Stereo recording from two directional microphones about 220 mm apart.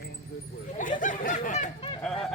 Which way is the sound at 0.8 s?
35° left (ahead or behind).